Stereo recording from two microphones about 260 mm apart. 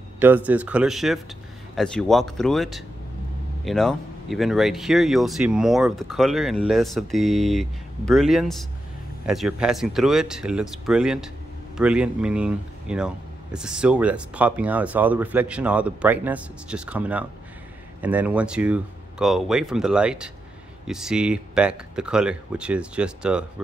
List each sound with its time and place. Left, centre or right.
0.2 s speech: centre